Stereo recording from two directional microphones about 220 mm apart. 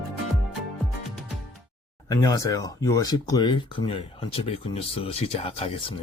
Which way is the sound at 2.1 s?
15° left (ahead or behind).